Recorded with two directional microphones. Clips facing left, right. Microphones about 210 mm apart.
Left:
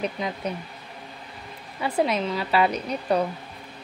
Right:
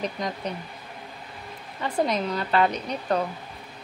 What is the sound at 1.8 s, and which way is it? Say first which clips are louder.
Speech: left 1 dB; 10° left (ahead or behind).